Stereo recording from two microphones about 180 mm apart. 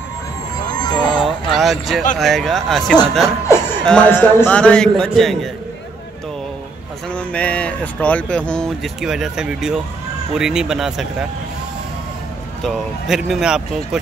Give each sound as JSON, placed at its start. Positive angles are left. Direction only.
{"t": 0.7, "sound": "music", "side_deg": 25}
{"t": 1.2, "sound": "a sound", "side_deg": 0}
{"t": 2.1, "sound": "speech", "side_deg": 0}
{"t": 7.1, "sound": "speech", "side_deg": 5}
{"t": 12.6, "sound": "speech", "side_deg": 0}